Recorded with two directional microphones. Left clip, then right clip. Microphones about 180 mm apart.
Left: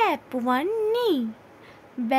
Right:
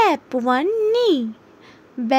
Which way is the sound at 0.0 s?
25° right (ahead or behind).